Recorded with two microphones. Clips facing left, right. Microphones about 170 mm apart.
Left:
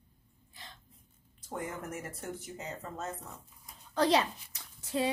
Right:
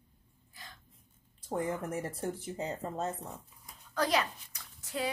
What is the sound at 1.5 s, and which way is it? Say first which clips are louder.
Speech: right 5 dB; 30° right (ahead or behind).